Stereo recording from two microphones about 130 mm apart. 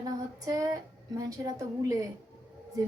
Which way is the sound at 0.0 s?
25° right (ahead or behind).